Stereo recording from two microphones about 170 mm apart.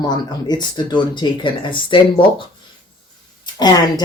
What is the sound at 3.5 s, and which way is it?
Speech, 25° left (ahead or behind).